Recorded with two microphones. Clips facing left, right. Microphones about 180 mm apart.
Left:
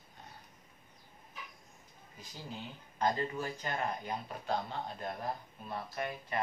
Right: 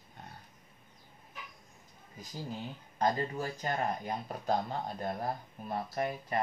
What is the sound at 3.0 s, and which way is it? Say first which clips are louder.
Speech: right 2 dB; 35° right (ahead or behind).